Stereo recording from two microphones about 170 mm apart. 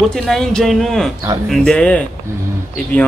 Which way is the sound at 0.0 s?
5° left (ahead or behind).